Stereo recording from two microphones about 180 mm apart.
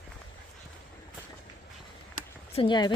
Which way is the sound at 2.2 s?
30° left (ahead or behind).